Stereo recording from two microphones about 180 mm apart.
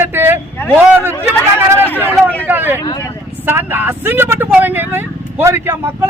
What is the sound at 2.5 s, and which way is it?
A man's voice, 10° right (ahead or behind).